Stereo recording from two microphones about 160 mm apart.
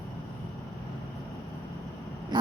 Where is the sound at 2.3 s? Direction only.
30° right (ahead or behind).